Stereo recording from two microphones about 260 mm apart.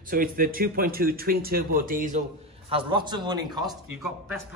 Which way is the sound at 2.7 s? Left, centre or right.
Centre.